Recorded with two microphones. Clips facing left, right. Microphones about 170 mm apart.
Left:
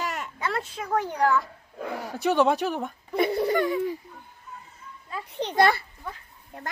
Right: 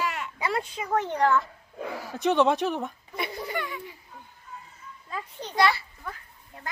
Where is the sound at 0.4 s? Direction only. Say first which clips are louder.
Right 1 dB; centre (ahead or behind).